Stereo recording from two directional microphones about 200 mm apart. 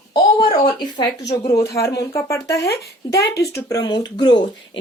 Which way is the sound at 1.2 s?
55° left (ahead or behind).